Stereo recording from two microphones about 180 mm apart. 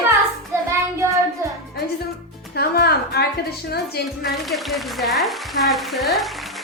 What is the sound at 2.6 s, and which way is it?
Speech, 60° left (ahead or behind).